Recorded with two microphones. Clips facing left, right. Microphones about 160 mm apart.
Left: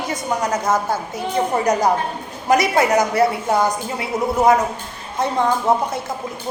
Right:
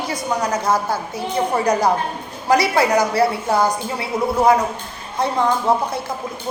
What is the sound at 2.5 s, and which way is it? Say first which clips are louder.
A woman's voice: even; 20° left (ahead or behind).